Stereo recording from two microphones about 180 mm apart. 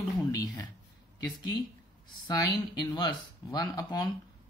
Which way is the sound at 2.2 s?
20° left (ahead or behind).